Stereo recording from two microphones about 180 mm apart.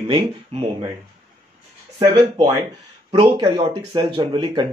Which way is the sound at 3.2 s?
25° right (ahead or behind).